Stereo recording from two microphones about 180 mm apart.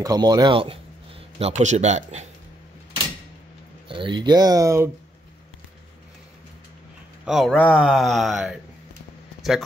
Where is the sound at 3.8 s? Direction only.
30° right (ahead or behind).